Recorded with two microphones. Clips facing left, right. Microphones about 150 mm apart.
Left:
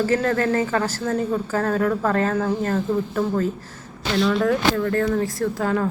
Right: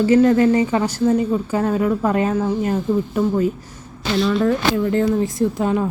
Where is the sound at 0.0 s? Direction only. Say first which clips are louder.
Right 7 dB; 15° right (ahead or behind).